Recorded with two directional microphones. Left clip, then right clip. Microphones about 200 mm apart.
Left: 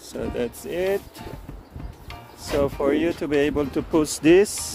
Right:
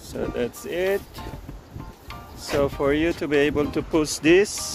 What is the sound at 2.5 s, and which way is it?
Speech, 10° left (ahead or behind).